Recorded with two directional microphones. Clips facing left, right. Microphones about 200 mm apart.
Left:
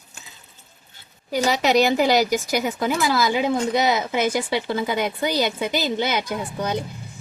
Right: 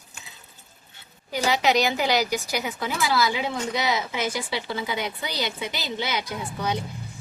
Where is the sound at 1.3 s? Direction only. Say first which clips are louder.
Left 3 dB; 40° left (ahead or behind).